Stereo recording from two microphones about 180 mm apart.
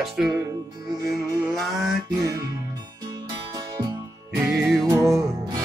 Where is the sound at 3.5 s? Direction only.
20° right (ahead or behind).